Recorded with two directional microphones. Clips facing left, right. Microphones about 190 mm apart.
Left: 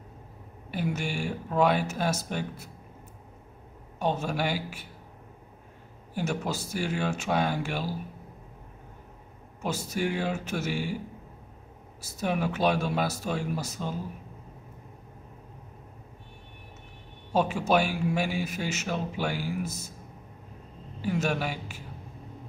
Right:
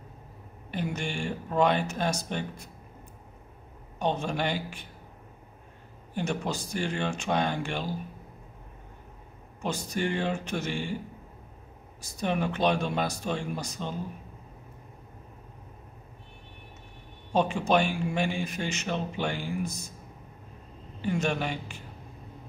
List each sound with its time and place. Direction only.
0.7 s speech: 5° left (ahead or behind)
4.0 s speech: 5° left (ahead or behind)
6.1 s speech: 5° left (ahead or behind)
9.6 s speech: 5° left (ahead or behind)
12.0 s speech: 5° left (ahead or behind)
17.3 s speech: 5° left (ahead or behind)
21.0 s speech: 5° left (ahead or behind)